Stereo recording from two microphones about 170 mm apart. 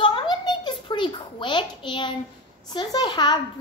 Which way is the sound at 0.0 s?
30° left (ahead or behind).